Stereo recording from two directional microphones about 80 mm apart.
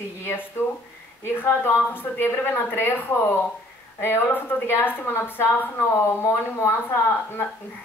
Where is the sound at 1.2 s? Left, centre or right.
Left.